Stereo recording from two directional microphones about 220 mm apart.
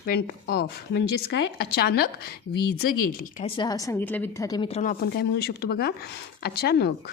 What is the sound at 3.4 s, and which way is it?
Speech, 20° left (ahead or behind).